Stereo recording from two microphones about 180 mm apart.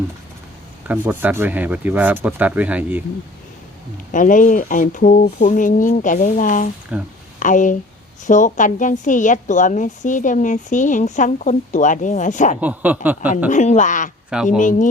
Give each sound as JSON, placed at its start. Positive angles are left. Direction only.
{"t": 0.9, "sound": "speech", "side_deg": -10}
{"t": 4.1, "sound": "a woman's voice", "side_deg": 45}
{"t": 6.9, "sound": "speech", "side_deg": -5}
{"t": 7.3, "sound": "a woman's voice", "side_deg": 45}
{"t": 12.5, "sound": "speech", "side_deg": -10}
{"t": 13.5, "sound": "a woman's voice", "side_deg": 40}
{"t": 14.3, "sound": "speech", "side_deg": -5}
{"t": 14.6, "sound": "a woman's voice", "side_deg": 45}